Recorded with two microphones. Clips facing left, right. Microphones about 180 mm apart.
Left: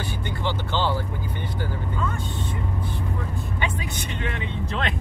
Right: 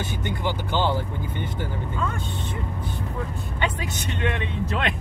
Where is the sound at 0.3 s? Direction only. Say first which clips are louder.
Right 1 dB; 15° right (ahead or behind).